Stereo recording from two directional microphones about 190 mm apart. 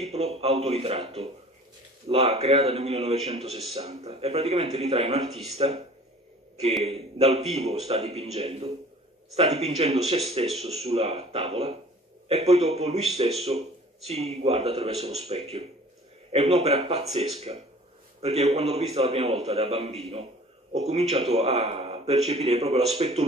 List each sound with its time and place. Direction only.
0.0 s speech: 35° right (ahead or behind)
6.8 s speech: 30° right (ahead or behind)